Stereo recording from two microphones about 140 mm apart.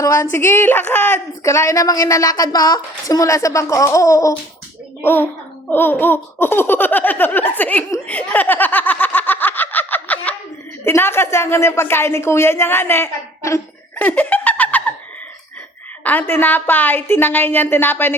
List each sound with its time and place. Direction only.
0.0 s a woman's voice: 20° left (ahead or behind)
16.0 s a woman's voice: 15° left (ahead or behind)